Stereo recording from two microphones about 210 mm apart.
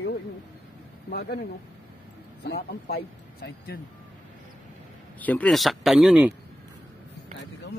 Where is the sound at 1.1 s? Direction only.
50° left (ahead or behind).